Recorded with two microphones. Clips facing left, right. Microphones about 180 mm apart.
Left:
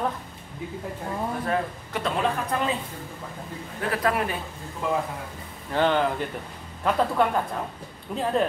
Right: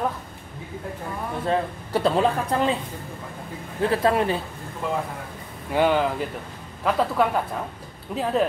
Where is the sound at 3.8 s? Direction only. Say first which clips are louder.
Right 5 dB; 30° right (ahead or behind).